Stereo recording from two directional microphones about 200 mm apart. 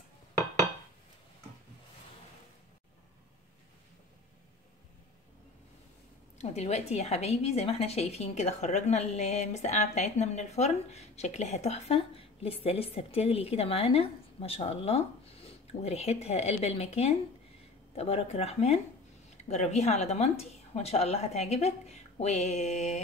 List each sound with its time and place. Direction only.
6.3 s a woman's voice: 35° left (ahead or behind)